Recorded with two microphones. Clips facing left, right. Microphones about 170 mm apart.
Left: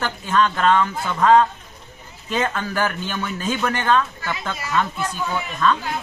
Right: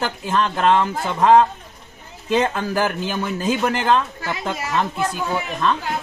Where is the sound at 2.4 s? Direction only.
25° right (ahead or behind).